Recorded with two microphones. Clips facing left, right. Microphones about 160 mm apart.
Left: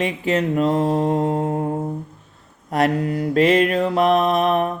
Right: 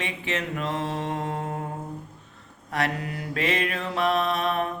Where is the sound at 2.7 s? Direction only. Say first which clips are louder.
Left 9 dB; 40° left (ahead or behind).